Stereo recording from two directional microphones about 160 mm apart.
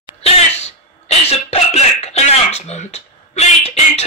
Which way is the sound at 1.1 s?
40° left (ahead or behind).